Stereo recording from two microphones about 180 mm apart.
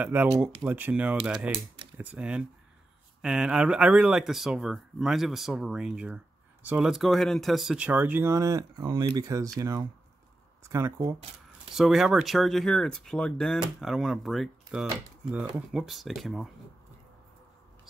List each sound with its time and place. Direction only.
0.0 s speech: 10° right (ahead or behind)
11.7 s speech: centre (ahead or behind)